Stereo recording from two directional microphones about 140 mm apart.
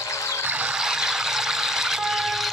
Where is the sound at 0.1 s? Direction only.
20° left (ahead or behind).